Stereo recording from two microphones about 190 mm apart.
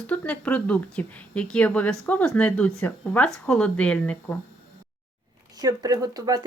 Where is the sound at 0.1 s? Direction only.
5° left (ahead or behind).